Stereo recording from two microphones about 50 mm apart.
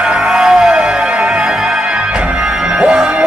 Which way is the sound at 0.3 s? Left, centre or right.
Centre.